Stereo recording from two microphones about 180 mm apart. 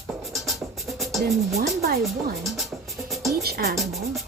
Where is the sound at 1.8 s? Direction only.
60° right (ahead or behind).